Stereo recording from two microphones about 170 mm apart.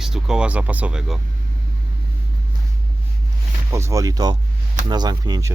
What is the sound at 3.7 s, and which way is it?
Speech, 15° right (ahead or behind).